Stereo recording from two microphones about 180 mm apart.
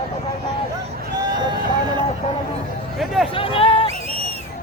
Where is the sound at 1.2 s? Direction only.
25° right (ahead or behind).